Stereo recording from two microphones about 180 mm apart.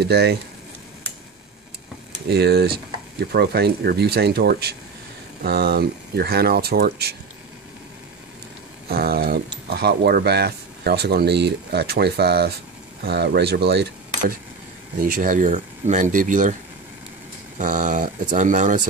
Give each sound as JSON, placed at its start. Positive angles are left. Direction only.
{"t": 0.0, "sound": "speech", "side_deg": -65}
{"t": 2.2, "sound": "speech", "side_deg": -65}
{"t": 8.8, "sound": "speech", "side_deg": -60}
{"t": 15.0, "sound": "speech", "side_deg": -55}
{"t": 17.6, "sound": "speech", "side_deg": -45}